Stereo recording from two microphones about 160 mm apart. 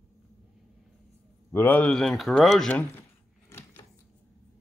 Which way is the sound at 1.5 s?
10° left (ahead or behind).